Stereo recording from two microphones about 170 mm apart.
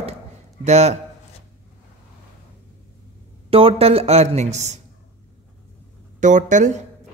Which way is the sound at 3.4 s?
35° right (ahead or behind).